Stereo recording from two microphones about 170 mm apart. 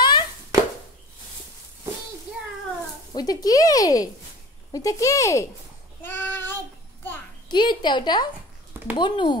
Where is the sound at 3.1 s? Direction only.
20° left (ahead or behind).